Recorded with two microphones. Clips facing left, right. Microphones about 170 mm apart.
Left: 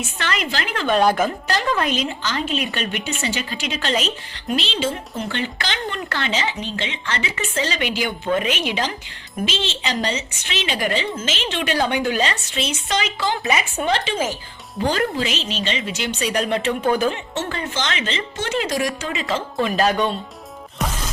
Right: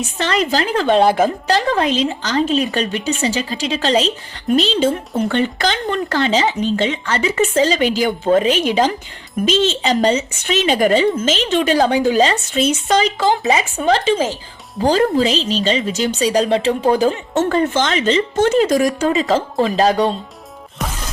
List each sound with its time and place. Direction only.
0.2 s a woman's voice: 35° right (ahead or behind)
13.4 s a woman's voice: 30° right (ahead or behind)
17.3 s a woman's voice: 45° right (ahead or behind)